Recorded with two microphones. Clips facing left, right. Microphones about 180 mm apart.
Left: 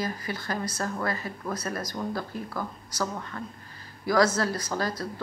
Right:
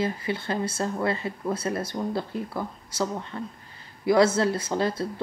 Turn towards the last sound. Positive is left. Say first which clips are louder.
# right 4 dB
turn(degrees=-25)  # may be behind; listen again after turning